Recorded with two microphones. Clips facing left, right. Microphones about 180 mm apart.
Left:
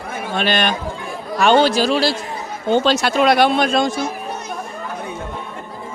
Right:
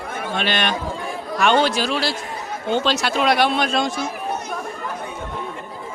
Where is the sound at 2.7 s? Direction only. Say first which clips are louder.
Left 5 dB; 45° left (ahead or behind).